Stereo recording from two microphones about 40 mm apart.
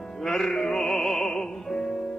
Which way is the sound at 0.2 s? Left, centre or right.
Centre.